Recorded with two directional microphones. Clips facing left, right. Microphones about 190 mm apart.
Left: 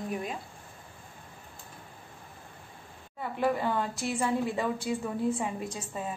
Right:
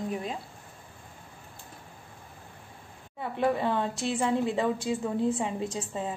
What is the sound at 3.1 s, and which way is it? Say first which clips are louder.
A woman's voice: right 2 dB; 20° right (ahead or behind).